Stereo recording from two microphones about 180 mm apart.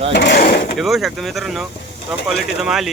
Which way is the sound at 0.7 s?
Centre (ahead or behind).